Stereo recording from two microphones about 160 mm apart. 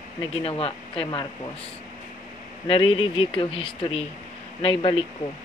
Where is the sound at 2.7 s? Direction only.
35° left (ahead or behind).